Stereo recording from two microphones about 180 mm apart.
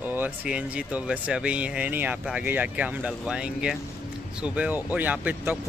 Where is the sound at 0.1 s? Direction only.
10° right (ahead or behind).